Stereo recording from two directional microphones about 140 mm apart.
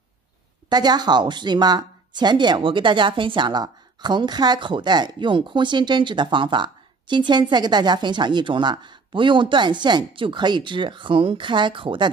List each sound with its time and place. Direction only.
0.7 s speech: 30° right (ahead or behind)